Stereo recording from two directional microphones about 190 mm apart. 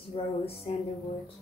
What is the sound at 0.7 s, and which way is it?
Speech, 30° left (ahead or behind).